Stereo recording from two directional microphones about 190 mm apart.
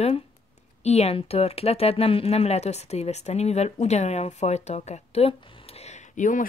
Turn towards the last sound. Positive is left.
turn(degrees=40)  # may be behind; listen again after turning